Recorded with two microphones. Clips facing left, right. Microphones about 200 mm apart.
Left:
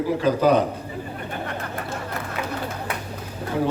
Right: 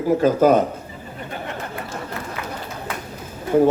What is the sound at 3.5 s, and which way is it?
Speech, 45° right (ahead or behind).